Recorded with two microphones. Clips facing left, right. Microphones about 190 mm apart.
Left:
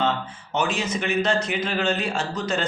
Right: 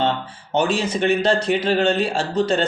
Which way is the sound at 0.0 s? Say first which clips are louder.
Right 3 dB; 30° right (ahead or behind).